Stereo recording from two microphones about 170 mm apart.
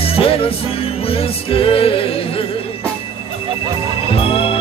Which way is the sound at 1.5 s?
35° left (ahead or behind).